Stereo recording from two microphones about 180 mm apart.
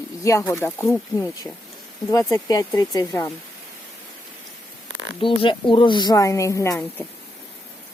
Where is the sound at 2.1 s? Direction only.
20° left (ahead or behind).